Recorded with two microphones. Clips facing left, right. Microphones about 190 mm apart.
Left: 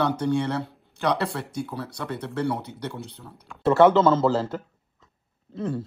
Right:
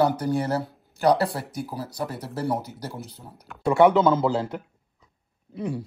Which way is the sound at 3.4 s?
5° left (ahead or behind).